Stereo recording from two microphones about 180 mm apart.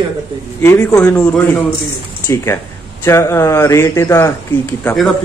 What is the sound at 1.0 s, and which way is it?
Speech, 10° left (ahead or behind).